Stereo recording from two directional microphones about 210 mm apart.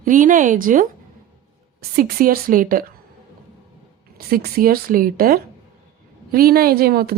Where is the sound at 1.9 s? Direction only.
45° right (ahead or behind).